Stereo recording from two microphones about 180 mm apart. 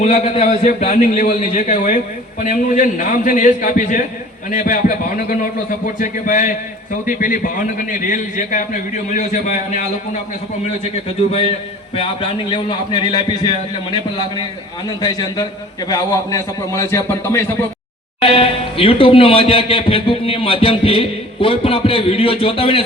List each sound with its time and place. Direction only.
0.0 s a man's voice: 40° left (ahead or behind)
11.3 s a man's voice: 30° left (ahead or behind)
15.9 s a man's voice: 20° left (ahead or behind)
18.2 s speech: 30° left (ahead or behind)